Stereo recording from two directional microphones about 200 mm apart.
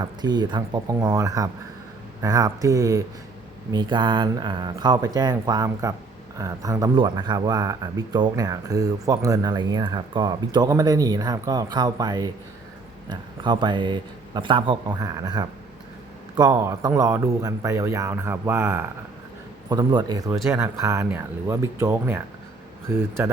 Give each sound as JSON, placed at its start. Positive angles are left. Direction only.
{"t": 0.0, "sound": "speech", "side_deg": -20}